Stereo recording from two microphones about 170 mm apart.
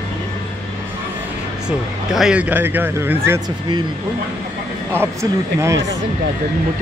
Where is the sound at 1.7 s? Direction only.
5° right (ahead or behind).